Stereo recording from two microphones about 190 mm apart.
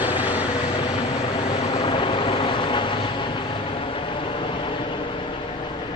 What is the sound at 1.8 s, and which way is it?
Vehicle, 25° left (ahead or behind).